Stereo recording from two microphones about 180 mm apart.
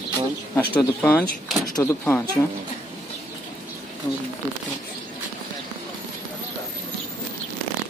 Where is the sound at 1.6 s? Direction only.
20° left (ahead or behind).